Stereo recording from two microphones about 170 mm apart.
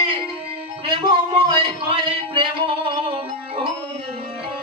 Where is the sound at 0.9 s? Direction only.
30° right (ahead or behind).